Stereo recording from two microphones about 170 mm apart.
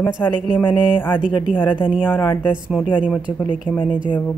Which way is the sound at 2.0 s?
15° left (ahead or behind).